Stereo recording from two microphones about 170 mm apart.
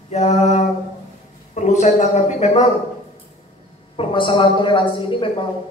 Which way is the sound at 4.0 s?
30° left (ahead or behind).